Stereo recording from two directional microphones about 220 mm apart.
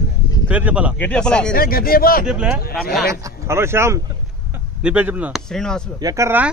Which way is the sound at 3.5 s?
10° right (ahead or behind).